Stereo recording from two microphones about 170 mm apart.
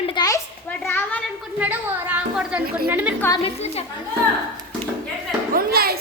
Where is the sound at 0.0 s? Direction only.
25° left (ahead or behind).